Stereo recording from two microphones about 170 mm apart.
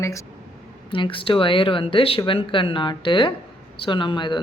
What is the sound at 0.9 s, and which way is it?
Speech, 30° left (ahead or behind).